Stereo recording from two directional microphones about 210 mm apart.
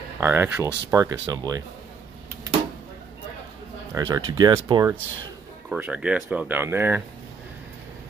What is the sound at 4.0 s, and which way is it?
Speech, 20° right (ahead or behind).